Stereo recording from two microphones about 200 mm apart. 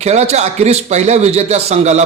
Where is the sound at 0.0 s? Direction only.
35° right (ahead or behind).